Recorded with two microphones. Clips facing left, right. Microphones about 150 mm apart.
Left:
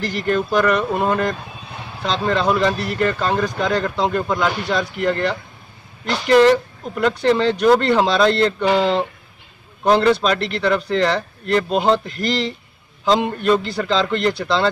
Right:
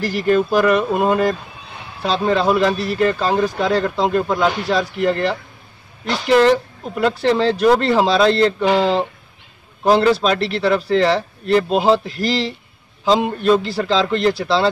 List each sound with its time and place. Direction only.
0.0 s speech: 5° right (ahead or behind)